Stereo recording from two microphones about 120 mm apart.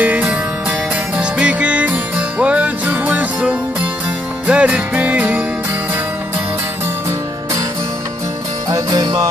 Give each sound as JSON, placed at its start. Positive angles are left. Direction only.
{"t": 0.0, "sound": "music", "side_deg": -10}
{"t": 8.6, "sound": "music", "side_deg": -30}